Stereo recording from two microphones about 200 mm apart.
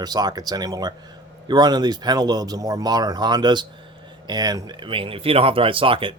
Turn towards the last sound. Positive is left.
turn(degrees=-25)  # may be behind; listen again after turning